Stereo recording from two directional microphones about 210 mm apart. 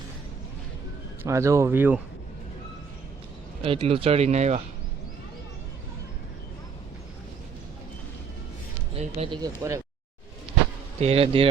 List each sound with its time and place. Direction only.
1.2 s speech: 15° right (ahead or behind)
3.6 s speech: 25° right (ahead or behind)
9.0 s speech: 25° right (ahead or behind)
11.0 s speech: 30° right (ahead or behind)